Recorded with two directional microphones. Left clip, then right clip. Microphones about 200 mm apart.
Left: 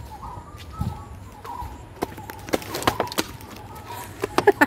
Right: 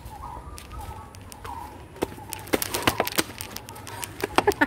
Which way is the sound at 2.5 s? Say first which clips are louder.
Left 1 dB; centre (ahead or behind).